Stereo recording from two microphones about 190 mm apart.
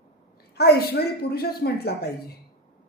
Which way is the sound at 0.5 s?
55° left (ahead or behind).